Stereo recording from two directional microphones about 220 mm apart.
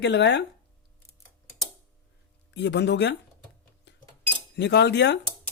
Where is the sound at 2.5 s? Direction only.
50° left (ahead or behind).